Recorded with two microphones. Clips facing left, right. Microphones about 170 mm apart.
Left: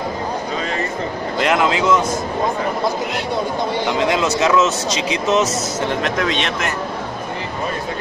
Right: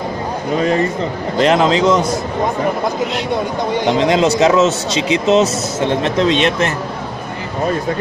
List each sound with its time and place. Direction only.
1.4 s speech: 30° right (ahead or behind)
4.1 s speech: 30° right (ahead or behind)